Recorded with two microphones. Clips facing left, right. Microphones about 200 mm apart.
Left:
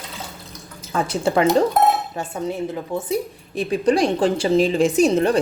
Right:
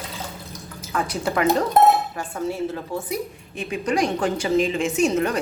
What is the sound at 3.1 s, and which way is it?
A woman's voice, 35° left (ahead or behind).